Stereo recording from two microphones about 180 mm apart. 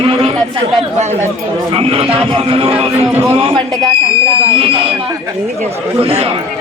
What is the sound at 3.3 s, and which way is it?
A man's voice, 30° right (ahead or behind).